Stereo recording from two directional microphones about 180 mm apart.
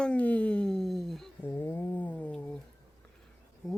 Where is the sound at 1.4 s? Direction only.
10° left (ahead or behind).